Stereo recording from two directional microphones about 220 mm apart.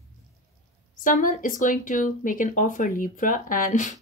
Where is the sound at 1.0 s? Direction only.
35° left (ahead or behind).